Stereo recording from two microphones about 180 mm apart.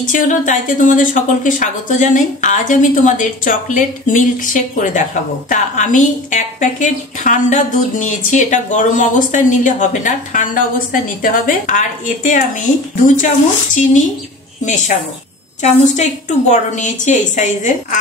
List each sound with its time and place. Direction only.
0.0 s a woman's voice: 45° left (ahead or behind)
14.6 s a woman's voice: 45° left (ahead or behind)